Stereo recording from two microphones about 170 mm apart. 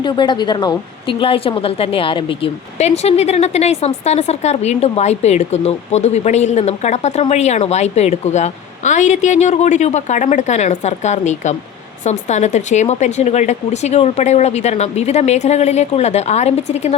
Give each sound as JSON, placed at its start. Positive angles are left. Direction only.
{"t": 0.0, "sound": "a woman's voice", "side_deg": 25}